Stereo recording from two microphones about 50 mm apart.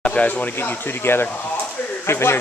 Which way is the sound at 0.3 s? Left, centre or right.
Left.